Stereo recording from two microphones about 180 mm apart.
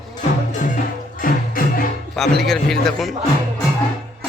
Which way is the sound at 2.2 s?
Centre (ahead or behind).